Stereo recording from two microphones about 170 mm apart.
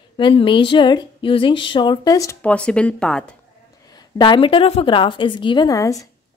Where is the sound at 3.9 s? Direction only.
25° left (ahead or behind).